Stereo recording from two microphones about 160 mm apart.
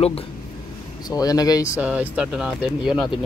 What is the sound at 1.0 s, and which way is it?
Speech, 25° left (ahead or behind).